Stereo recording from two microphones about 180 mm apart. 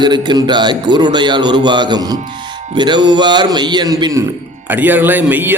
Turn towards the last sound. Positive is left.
turn(degrees=-10)  # may be behind; listen again after turning